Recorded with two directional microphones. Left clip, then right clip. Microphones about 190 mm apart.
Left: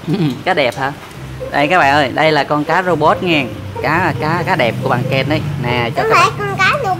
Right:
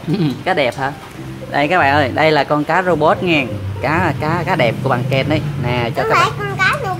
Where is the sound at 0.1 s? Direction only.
Centre (ahead or behind).